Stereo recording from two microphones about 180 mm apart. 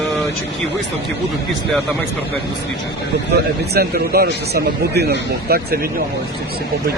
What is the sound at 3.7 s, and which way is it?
A man's voice, 60° right (ahead or behind).